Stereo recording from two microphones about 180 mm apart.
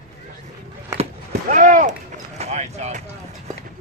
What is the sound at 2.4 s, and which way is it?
Speech, 40° right (ahead or behind).